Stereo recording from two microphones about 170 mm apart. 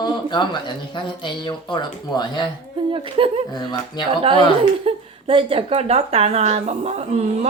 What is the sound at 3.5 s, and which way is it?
Speech, 25° left (ahead or behind).